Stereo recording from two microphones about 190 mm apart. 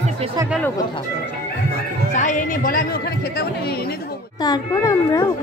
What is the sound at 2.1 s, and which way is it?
Speech, 40° left (ahead or behind).